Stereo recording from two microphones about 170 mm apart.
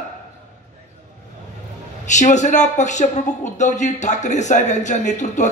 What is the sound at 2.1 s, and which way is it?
Speech, 45° left (ahead or behind).